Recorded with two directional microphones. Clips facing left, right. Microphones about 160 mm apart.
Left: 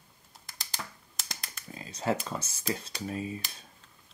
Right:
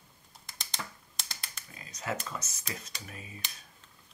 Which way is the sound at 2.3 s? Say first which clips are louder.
Left 4 dB; 30° left (ahead or behind).